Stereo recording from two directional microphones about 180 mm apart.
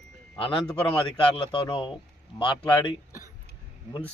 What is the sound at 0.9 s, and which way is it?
A man's voice, 25° left (ahead or behind).